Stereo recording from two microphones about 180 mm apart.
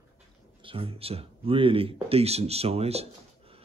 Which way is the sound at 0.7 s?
30° right (ahead or behind).